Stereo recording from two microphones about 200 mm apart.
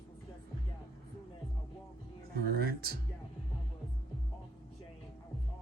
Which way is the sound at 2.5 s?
50° right (ahead or behind).